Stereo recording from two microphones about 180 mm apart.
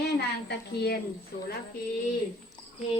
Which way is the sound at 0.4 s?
65° left (ahead or behind).